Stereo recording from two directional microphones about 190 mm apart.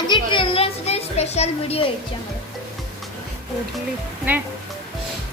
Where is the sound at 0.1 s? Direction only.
25° left (ahead or behind).